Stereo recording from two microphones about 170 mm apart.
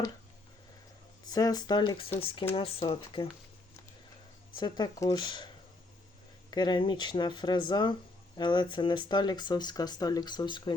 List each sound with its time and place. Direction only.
1.3 s speech: 20° left (ahead or behind)
4.5 s speech: 25° left (ahead or behind)
6.5 s speech: 25° left (ahead or behind)